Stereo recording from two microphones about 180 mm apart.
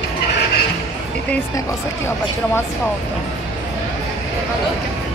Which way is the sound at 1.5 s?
20° left (ahead or behind).